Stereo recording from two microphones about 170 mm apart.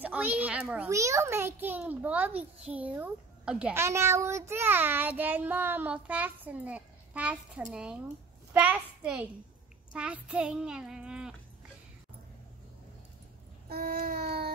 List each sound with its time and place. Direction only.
0.0 s a child's voice: 10° right (ahead or behind)
13.7 s child singing: 60° right (ahead or behind)